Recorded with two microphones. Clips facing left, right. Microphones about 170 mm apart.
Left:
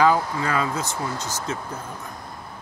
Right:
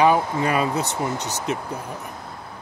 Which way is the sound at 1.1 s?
70° right (ahead or behind).